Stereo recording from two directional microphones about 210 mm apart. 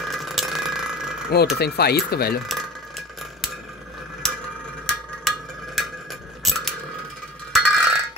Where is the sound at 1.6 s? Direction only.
50° left (ahead or behind).